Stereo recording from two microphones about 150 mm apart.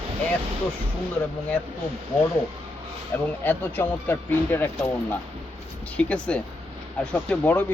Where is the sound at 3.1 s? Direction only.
15° left (ahead or behind).